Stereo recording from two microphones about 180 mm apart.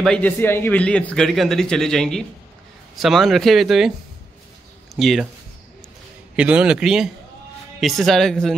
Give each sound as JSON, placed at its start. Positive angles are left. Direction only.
{"t": 0.0, "sound": "a man's voice", "side_deg": 5}
{"t": 4.9, "sound": "a man's voice", "side_deg": 0}
{"t": 6.3, "sound": "a man's voice", "side_deg": -5}